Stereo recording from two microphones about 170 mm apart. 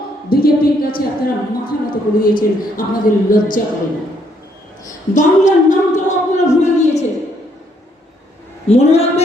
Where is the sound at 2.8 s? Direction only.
55° left (ahead or behind).